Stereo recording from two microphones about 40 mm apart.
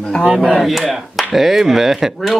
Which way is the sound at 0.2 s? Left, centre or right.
Right.